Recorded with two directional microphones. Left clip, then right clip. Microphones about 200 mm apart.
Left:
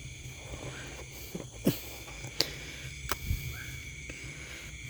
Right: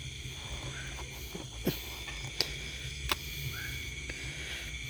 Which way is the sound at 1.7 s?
45° left (ahead or behind).